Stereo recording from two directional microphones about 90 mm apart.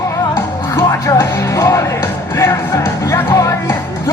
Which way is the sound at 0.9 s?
35° left (ahead or behind).